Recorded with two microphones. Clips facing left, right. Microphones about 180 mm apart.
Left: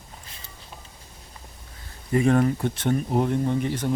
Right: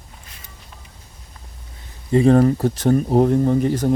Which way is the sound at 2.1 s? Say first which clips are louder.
Right 6 dB; 30° right (ahead or behind).